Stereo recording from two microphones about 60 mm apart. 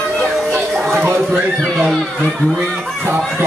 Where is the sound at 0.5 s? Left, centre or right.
Centre.